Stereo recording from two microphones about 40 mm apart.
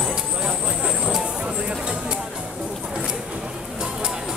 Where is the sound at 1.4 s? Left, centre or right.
Right.